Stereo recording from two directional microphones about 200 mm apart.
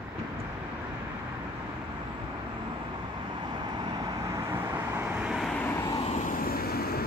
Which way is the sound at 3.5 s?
20° right (ahead or behind).